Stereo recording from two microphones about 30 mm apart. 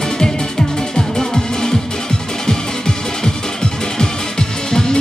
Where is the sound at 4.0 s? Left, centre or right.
Centre.